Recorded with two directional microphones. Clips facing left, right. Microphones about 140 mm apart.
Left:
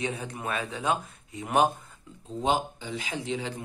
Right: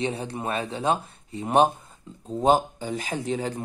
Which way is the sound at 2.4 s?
45° right (ahead or behind).